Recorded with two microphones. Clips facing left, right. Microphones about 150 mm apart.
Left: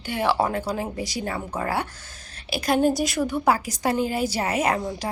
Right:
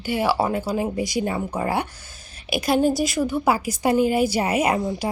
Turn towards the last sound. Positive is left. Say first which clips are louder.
# right 3 dB
turn(degrees=-10)  # may be behind; listen again after turning